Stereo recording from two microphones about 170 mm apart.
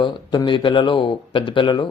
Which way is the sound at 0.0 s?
30° left (ahead or behind).